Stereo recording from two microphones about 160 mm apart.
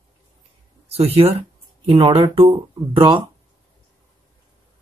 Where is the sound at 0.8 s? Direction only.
40° right (ahead or behind).